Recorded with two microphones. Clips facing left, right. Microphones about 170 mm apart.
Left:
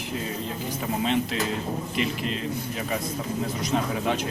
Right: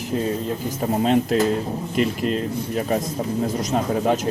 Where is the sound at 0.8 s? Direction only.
40° right (ahead or behind).